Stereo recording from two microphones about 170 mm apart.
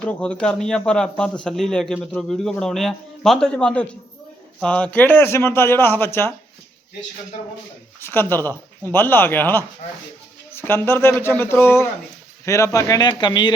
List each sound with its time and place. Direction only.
0.0 s a man's voice: 5° left (ahead or behind)
7.9 s a man's voice: 15° left (ahead or behind)